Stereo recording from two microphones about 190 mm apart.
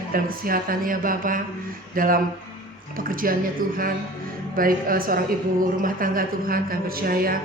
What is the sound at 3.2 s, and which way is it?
Speech, 50° right (ahead or behind).